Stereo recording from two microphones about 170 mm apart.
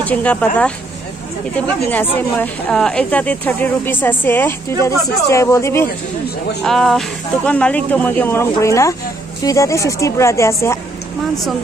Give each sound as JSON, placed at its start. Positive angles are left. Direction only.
{"t": 0.0, "sound": "speech", "side_deg": 10}
{"t": 1.9, "sound": "speech", "side_deg": 10}
{"t": 6.6, "sound": "speech", "side_deg": 0}